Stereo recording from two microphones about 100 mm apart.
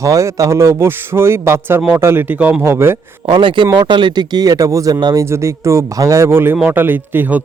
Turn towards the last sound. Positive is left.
turn(degrees=-15)  # may be behind; listen again after turning